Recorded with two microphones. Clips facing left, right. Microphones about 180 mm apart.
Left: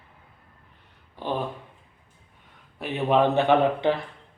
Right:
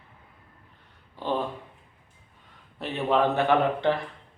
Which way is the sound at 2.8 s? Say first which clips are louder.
Left 2 dB; 15° left (ahead or behind).